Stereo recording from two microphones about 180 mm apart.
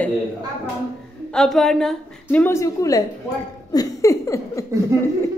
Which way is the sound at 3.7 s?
20° left (ahead or behind).